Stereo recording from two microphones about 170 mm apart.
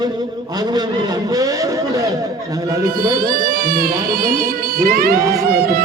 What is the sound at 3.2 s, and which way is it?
Speech, 60° right (ahead or behind).